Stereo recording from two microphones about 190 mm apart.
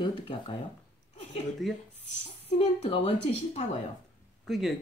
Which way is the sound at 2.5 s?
35° left (ahead or behind).